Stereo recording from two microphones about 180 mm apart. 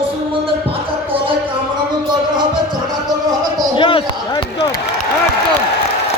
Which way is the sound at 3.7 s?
25° left (ahead or behind).